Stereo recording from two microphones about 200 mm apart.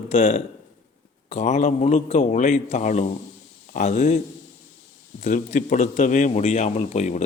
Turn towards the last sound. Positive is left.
turn(degrees=35)  # may be behind; listen again after turning